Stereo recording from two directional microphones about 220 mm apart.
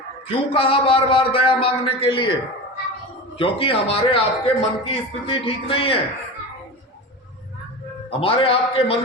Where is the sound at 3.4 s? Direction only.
25° left (ahead or behind).